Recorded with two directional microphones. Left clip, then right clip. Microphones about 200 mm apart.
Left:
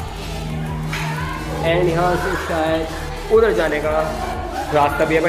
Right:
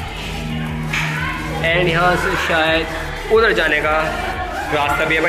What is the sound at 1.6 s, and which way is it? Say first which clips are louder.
A man's voice: right 2 dB; 10° left (ahead or behind).